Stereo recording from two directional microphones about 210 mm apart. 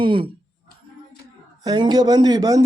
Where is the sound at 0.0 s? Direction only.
25° right (ahead or behind).